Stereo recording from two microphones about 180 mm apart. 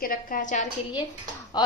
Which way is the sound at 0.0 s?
50° left (ahead or behind).